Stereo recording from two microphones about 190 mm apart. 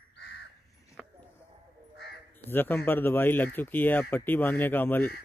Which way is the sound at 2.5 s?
10° left (ahead or behind).